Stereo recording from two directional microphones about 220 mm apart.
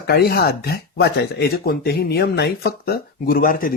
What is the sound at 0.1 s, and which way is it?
Speech, 45° left (ahead or behind).